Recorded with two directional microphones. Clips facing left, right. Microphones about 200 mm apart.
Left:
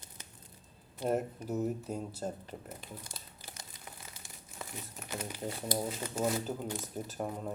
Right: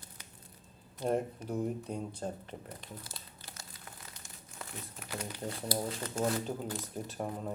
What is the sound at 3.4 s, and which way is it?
Crumpling, 15° left (ahead or behind).